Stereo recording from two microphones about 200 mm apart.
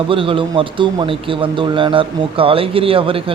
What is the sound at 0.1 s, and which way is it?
A man's voice, 25° right (ahead or behind).